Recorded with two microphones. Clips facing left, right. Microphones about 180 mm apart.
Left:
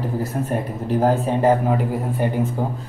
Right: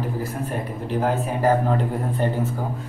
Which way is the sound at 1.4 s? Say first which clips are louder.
Even; 20° left (ahead or behind).